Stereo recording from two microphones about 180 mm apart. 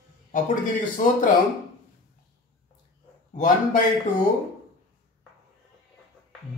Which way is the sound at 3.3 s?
45° left (ahead or behind).